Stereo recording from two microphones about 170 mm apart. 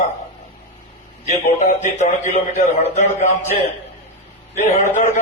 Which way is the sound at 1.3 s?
40° left (ahead or behind).